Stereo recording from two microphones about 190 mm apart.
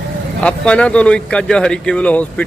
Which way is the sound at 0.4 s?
5° left (ahead or behind).